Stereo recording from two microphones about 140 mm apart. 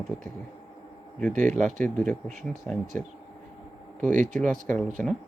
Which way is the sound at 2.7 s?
5° left (ahead or behind).